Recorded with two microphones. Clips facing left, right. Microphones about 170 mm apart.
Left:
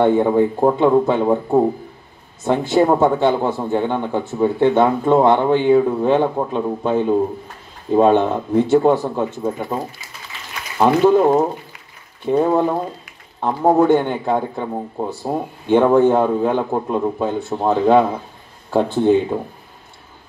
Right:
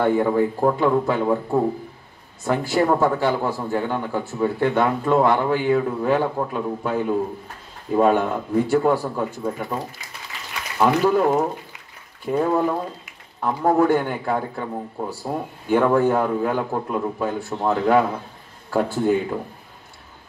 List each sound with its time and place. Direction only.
0.0 s a man's voice: 25° left (ahead or behind)